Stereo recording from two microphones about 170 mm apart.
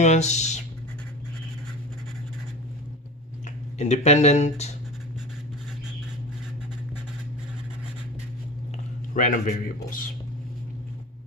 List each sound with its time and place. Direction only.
0.0 s speech: 40° left (ahead or behind)
3.8 s speech: 40° left (ahead or behind)
9.1 s a man's voice: 50° left (ahead or behind)